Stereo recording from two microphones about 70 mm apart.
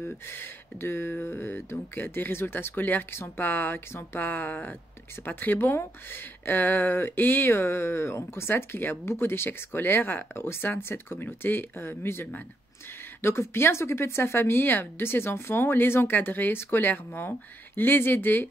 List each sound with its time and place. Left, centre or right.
0.0 s speech: left